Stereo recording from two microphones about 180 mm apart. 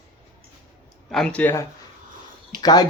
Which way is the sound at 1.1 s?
5° left (ahead or behind).